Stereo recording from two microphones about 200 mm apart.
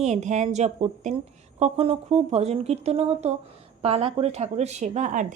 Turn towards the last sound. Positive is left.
turn(degrees=-40)  # may be behind; listen again after turning